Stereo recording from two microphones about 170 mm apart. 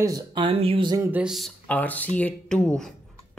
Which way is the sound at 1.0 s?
10° right (ahead or behind).